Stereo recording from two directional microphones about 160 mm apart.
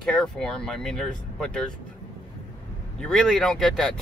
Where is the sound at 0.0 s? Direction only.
5° left (ahead or behind).